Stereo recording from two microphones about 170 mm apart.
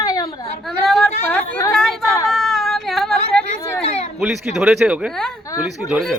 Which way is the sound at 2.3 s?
Centre (ahead or behind).